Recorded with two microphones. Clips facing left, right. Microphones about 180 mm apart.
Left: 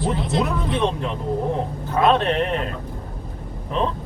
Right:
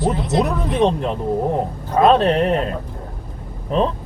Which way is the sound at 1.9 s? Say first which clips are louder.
Right 4 dB; 35° right (ahead or behind).